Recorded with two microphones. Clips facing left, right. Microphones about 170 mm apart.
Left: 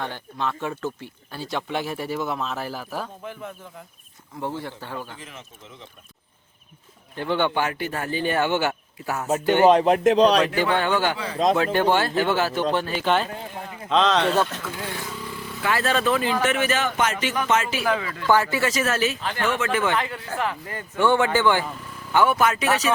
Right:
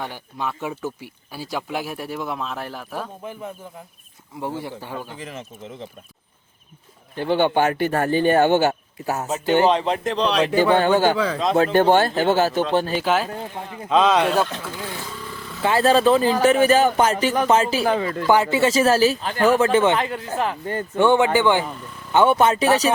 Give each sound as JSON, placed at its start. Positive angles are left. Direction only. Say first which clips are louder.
{"t": 0.0, "sound": "speech", "louder": "even", "side_deg": -10}
{"t": 4.4, "sound": "a man's voice", "louder": "right 2 dB", "side_deg": -15}
{"t": 7.3, "sound": "a man's voice", "louder": "right 5 dB", "side_deg": -45}
{"t": 9.6, "sound": "speech", "louder": "left 4 dB", "side_deg": 45}
{"t": 10.4, "sound": "a man's voice", "louder": "right 5 dB", "side_deg": -40}
{"t": 13.1, "sound": "a man's voice", "louder": "right 1 dB", "side_deg": -5}
{"t": 15.6, "sound": "speech", "louder": "right 6 dB", "side_deg": -30}
{"t": 18.3, "sound": "speech", "louder": "right 3 dB", "side_deg": -20}
{"t": 21.0, "sound": "a man's voice", "louder": "right 3 dB", "side_deg": -20}